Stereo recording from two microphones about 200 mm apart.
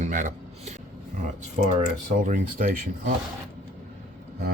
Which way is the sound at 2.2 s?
40° right (ahead or behind).